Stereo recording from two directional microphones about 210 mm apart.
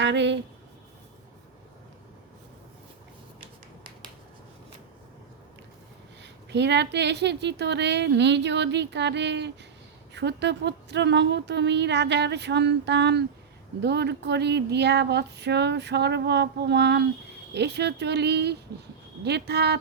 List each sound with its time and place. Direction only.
0.0 s speech: 55° right (ahead or behind)
6.2 s speech: 55° right (ahead or behind)
13.8 s a sound: 55° right (ahead or behind)